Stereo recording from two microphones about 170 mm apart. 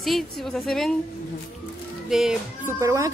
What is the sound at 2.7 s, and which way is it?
Speech, 20° right (ahead or behind).